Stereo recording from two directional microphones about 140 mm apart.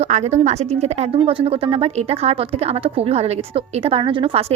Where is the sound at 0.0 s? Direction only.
50° right (ahead or behind).